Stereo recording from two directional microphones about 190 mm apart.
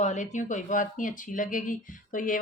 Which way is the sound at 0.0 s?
40° left (ahead or behind).